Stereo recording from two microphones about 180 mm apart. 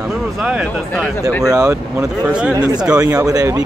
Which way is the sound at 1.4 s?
20° right (ahead or behind).